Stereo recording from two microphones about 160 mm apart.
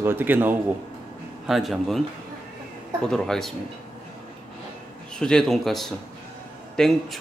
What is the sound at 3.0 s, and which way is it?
Speech, 5° left (ahead or behind).